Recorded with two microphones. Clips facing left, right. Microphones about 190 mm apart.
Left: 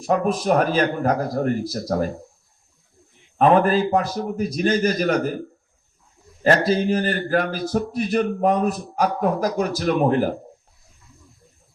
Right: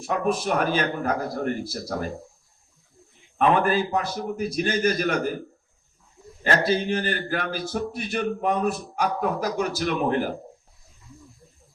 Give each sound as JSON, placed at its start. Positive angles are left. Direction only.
{"t": 0.1, "sound": "a man's voice", "side_deg": 40}
{"t": 3.3, "sound": "a man's voice", "side_deg": 35}
{"t": 6.4, "sound": "a man's voice", "side_deg": 35}